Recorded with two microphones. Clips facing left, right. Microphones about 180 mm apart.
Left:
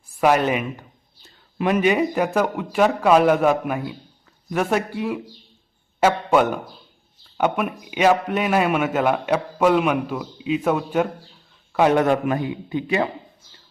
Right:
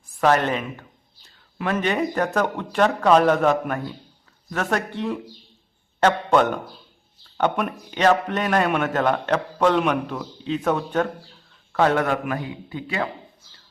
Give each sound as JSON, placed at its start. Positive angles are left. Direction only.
{"t": 0.2, "sound": "a man's voice", "side_deg": 10}